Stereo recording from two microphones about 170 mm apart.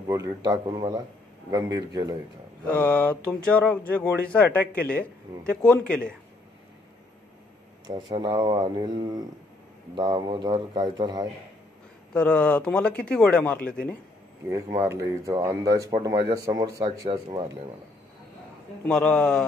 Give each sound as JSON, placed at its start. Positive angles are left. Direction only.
{"t": 0.1, "sound": "speech", "side_deg": -20}
{"t": 2.7, "sound": "speech", "side_deg": 10}
{"t": 8.1, "sound": "speech", "side_deg": -25}
{"t": 12.1, "sound": "speech", "side_deg": 5}
{"t": 14.5, "sound": "speech", "side_deg": -20}
{"t": 18.9, "sound": "a man's voice", "side_deg": 5}